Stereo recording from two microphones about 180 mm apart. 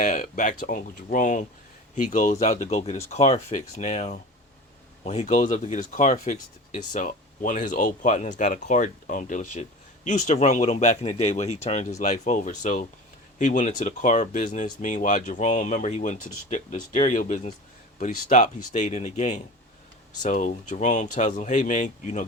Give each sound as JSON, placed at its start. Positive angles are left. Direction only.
{"t": 0.0, "sound": "speech", "side_deg": 45}